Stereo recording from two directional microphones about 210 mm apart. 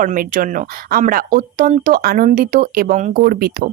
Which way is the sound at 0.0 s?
40° right (ahead or behind).